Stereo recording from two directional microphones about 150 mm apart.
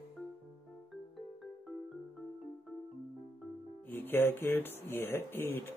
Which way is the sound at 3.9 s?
15° left (ahead or behind).